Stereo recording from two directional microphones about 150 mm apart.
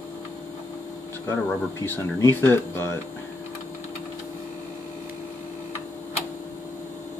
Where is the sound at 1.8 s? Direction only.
15° left (ahead or behind).